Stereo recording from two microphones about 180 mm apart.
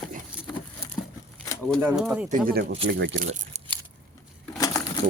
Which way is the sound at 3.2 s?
40° right (ahead or behind).